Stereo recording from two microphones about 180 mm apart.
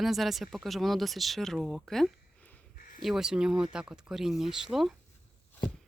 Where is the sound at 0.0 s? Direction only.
Centre (ahead or behind).